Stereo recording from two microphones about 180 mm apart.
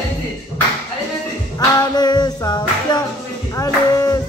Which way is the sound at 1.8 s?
20° left (ahead or behind).